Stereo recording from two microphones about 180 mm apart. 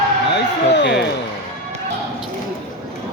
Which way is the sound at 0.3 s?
70° left (ahead or behind).